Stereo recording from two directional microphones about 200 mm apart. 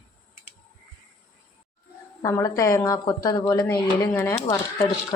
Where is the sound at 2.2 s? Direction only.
15° left (ahead or behind).